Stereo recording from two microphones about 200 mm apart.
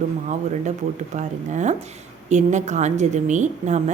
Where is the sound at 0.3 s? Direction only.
35° right (ahead or behind).